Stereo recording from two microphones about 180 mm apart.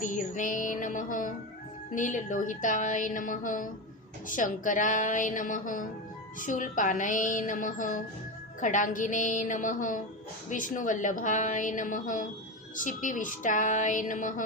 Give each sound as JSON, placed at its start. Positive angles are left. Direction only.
{"t": 0.0, "sound": "a woman's voice", "side_deg": 45}